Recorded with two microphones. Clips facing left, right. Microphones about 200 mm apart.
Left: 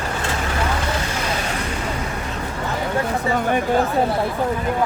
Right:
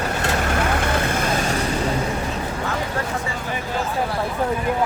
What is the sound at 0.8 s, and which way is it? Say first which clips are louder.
Vehicle: right 3 dB; 55° right (ahead or behind).